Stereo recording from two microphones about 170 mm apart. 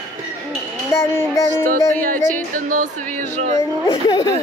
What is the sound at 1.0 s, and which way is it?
Child singing, 15° left (ahead or behind).